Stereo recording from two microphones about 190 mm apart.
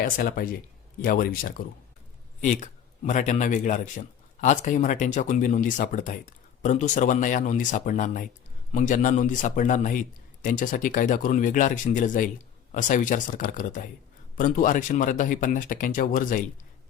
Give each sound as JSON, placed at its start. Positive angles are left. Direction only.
{"t": 0.0, "sound": "a man's voice", "side_deg": 50}